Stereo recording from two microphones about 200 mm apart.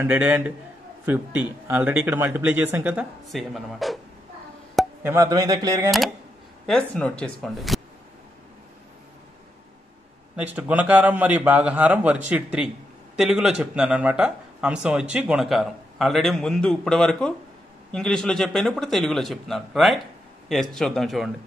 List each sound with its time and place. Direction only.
0.0 s speech: 10° right (ahead or behind)
4.7 s a sound: 10° right (ahead or behind)
5.9 s a man's voice: centre (ahead or behind)
10.3 s a man's voice: 10° right (ahead or behind)